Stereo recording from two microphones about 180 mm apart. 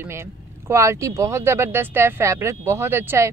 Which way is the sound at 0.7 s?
15° right (ahead or behind).